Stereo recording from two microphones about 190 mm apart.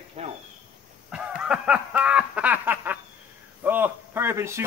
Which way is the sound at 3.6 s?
10° right (ahead or behind).